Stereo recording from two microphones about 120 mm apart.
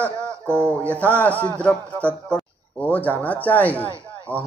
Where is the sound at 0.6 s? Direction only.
10° left (ahead or behind).